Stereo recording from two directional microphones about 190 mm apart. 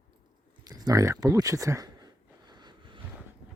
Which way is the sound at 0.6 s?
20° right (ahead or behind).